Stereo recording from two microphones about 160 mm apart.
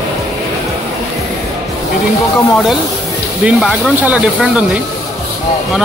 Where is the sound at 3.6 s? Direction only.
Centre (ahead or behind).